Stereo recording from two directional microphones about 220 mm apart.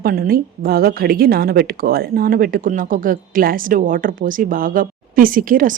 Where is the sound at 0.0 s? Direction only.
40° right (ahead or behind).